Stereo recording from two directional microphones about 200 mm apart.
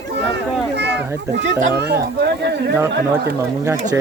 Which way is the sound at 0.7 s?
60° right (ahead or behind).